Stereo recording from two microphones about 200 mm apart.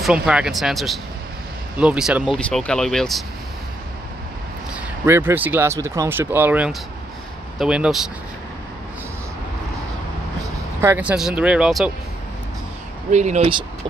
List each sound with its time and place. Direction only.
0.0 s speech: 5° right (ahead or behind)
4.7 s speech: 10° right (ahead or behind)
10.8 s speech: 10° right (ahead or behind)
13.1 s speech: 35° right (ahead or behind)